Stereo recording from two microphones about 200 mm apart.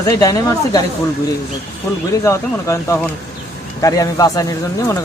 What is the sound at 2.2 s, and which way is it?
Speech, 15° left (ahead or behind).